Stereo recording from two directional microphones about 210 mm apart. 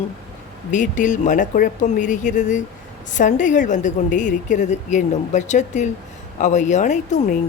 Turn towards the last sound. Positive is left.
turn(degrees=35)  # may be behind; listen again after turning